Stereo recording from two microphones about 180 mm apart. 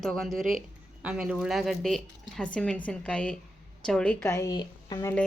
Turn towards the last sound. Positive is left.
turn(degrees=20)  # may be behind; listen again after turning